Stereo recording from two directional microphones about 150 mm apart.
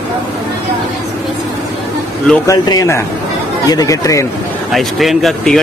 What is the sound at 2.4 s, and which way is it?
Speech, 25° left (ahead or behind).